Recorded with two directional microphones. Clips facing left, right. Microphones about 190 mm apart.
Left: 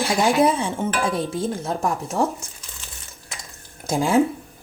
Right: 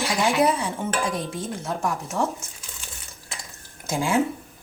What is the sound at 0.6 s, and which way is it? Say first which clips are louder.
Dishes: left 3 dB; 25° left (ahead or behind).